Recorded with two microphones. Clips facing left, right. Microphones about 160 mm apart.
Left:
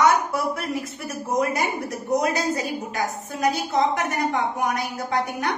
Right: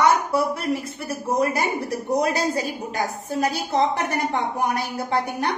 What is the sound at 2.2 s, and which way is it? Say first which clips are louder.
A woman's voice: right 1 dB; 30° right (ahead or behind).